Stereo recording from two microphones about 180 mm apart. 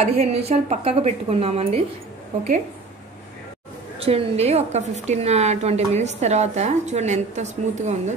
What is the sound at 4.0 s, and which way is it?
A woman's voice, 35° right (ahead or behind).